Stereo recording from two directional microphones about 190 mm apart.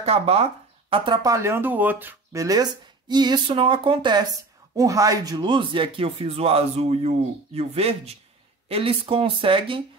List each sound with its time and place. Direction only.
0.0 s speech: 30° right (ahead or behind)